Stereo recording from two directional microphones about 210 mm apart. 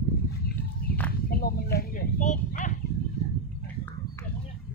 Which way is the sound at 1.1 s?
45° left (ahead or behind).